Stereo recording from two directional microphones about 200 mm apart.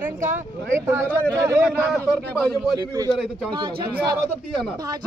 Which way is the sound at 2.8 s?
15° right (ahead or behind).